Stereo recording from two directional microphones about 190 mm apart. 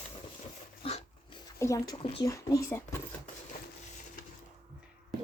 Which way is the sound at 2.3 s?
15° left (ahead or behind).